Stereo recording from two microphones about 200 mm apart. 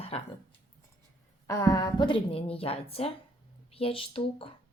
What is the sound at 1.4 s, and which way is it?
Speech, 15° left (ahead or behind).